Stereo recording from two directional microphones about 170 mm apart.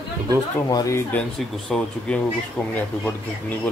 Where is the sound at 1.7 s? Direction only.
Centre (ahead or behind).